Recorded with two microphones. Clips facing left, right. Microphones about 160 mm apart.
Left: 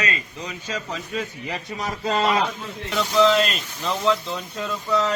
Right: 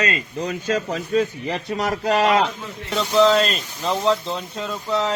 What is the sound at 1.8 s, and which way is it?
Speech, 70° right (ahead or behind).